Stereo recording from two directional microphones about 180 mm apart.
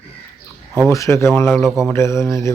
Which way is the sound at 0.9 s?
15° left (ahead or behind).